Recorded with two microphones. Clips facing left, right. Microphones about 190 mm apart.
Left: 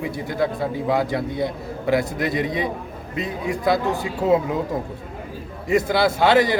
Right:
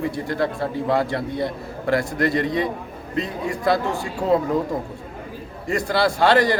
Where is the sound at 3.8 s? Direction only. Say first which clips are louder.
Left 2 dB; 20° left (ahead or behind).